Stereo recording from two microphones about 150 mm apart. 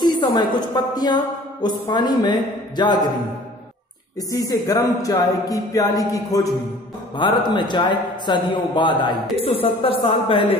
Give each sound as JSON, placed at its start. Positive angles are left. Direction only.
{"t": 0.0, "sound": "a woman's voice", "side_deg": 30}
{"t": 1.9, "sound": "music", "side_deg": 30}
{"t": 4.3, "sound": "music", "side_deg": 20}
{"t": 7.2, "sound": "a man's voice", "side_deg": 30}